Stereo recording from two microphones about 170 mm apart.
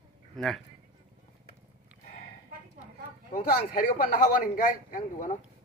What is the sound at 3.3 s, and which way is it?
Speech, 55° left (ahead or behind).